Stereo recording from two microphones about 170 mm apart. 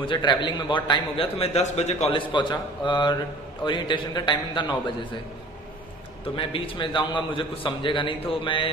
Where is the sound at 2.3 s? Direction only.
25° left (ahead or behind).